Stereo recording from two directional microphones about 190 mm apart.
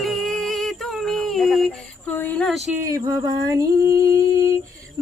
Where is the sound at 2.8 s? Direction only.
20° right (ahead or behind).